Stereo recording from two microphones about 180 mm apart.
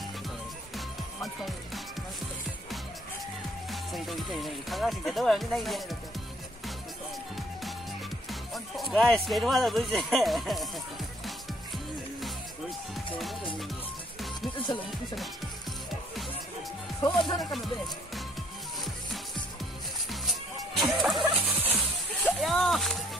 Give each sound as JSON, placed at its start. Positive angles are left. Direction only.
{"t": 0.7, "sound": "music", "side_deg": 0}
{"t": 3.7, "sound": "speech", "side_deg": 0}
{"t": 8.3, "sound": "speech", "side_deg": 0}
{"t": 13.1, "sound": "music", "side_deg": 0}
{"t": 17.0, "sound": "speech", "side_deg": 25}
{"t": 20.1, "sound": "turkey", "side_deg": 0}
{"t": 22.2, "sound": "a sound", "side_deg": 0}